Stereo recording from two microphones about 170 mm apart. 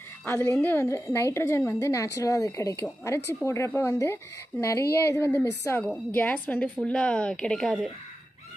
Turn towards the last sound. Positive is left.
turn(degrees=5)  # may be behind; listen again after turning